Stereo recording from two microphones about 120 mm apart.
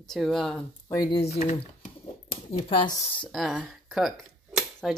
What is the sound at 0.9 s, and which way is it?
Speech, 40° left (ahead or behind).